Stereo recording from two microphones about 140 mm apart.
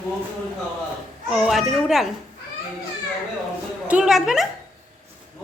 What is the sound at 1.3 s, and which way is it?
Speech, centre (ahead or behind).